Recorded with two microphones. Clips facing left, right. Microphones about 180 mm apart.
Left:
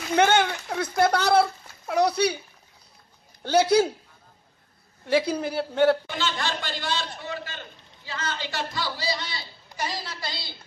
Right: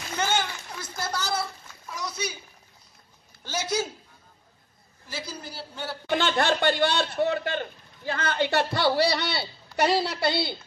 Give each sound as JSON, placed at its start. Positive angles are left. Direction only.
{"t": 0.1, "sound": "a sound", "side_deg": 65}
{"t": 3.4, "sound": "a man's voice", "side_deg": 60}
{"t": 5.0, "sound": "a man's voice", "side_deg": 60}
{"t": 6.0, "sound": "a man's voice", "side_deg": -55}